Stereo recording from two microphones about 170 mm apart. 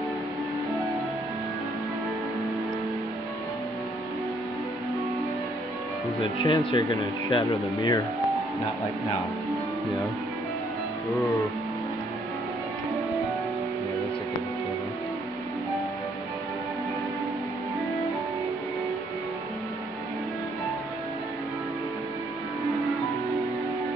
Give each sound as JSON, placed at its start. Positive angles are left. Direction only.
{"t": 6.4, "sound": "speech", "side_deg": 30}